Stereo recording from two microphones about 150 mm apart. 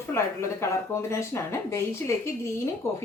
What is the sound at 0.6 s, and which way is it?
Speech, 20° left (ahead or behind).